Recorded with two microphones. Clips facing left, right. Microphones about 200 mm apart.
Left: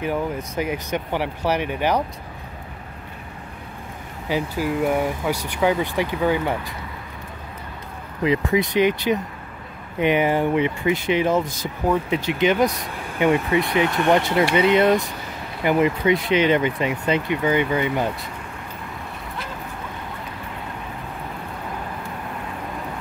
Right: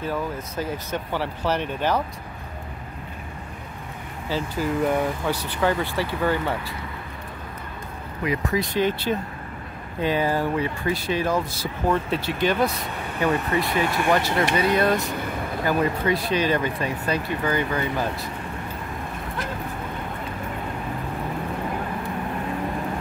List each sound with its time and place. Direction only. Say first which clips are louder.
0.0 s speech: left 3 dB; 15° left (ahead or behind)
4.3 s speech: left 2 dB; 10° left (ahead or behind)
8.2 s speech: left 5 dB; 20° left (ahead or behind)
13.9 s speech: left 3 dB; 20° left (ahead or behind)